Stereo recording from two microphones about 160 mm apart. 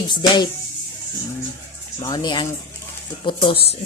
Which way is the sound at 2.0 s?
25° left (ahead or behind).